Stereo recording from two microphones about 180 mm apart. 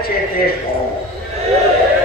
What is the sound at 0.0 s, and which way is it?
Speech, 55° left (ahead or behind).